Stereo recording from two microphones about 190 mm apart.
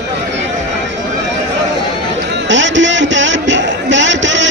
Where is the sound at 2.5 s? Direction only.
75° right (ahead or behind).